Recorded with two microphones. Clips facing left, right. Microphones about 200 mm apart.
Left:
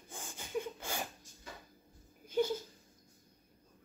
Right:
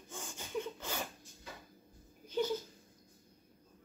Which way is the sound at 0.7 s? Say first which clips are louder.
Even; 10° left (ahead or behind).